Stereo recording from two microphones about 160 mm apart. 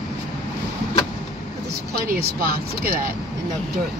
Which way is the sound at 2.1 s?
65° right (ahead or behind).